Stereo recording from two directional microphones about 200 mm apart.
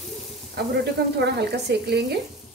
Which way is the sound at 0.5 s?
55° right (ahead or behind).